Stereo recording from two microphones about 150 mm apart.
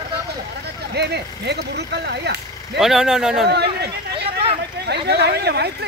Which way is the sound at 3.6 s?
35° right (ahead or behind).